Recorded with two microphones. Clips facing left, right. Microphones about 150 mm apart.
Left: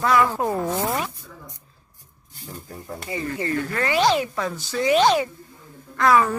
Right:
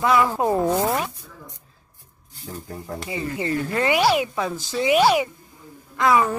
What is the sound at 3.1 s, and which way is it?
A woman's voice, 20° right (ahead or behind).